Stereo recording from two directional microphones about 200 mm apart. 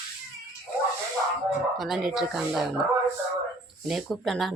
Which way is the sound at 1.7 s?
Centre (ahead or behind).